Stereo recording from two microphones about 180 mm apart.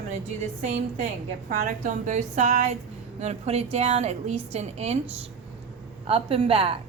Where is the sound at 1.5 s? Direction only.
45° right (ahead or behind).